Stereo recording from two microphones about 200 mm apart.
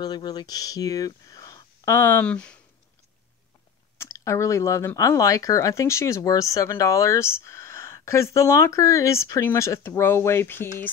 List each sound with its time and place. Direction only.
0.0 s speech: 20° left (ahead or behind)
4.0 s speech: 15° left (ahead or behind)